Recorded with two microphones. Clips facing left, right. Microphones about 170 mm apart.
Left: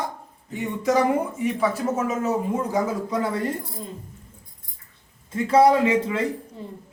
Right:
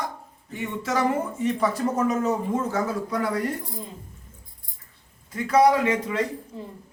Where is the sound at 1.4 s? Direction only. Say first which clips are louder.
Right 1 dB; 5° left (ahead or behind).